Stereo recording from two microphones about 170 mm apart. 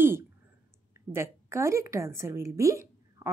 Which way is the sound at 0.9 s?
15° right (ahead or behind).